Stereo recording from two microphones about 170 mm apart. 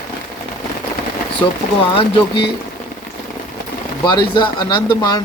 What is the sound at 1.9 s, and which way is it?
Speech, 30° left (ahead or behind).